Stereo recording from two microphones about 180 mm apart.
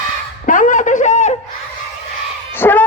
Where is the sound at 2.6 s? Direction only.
10° left (ahead or behind).